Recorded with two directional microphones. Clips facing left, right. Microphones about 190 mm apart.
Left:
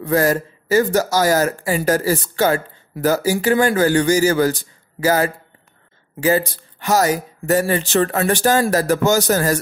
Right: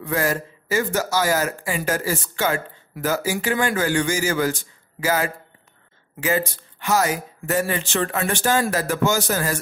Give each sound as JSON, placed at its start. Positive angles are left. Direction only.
{"t": 0.0, "sound": "speech", "side_deg": 40}